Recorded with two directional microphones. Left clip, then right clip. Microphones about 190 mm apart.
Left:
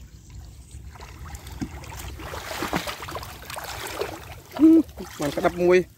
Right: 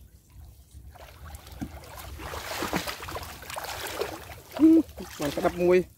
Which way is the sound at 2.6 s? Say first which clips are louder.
Left 4 dB; 20° left (ahead or behind).